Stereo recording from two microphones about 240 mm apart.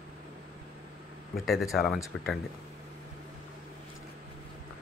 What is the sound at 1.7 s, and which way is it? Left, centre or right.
Speech, centre.